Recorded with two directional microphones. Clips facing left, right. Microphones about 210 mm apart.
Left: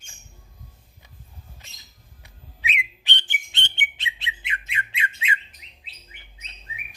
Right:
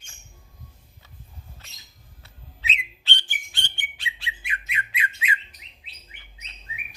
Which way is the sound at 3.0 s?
20° left (ahead or behind).